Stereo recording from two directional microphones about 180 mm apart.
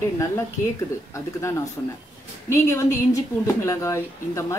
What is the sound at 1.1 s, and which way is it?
Speech, 15° left (ahead or behind).